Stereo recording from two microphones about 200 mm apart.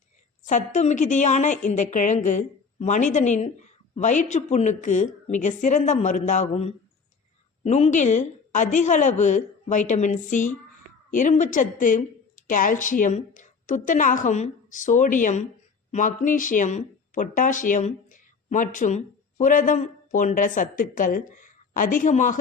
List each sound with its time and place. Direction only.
0.4 s a woman's voice: 40° left (ahead or behind)